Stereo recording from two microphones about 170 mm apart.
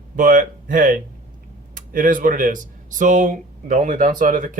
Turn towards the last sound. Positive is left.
turn(degrees=-50)  # may be behind; listen again after turning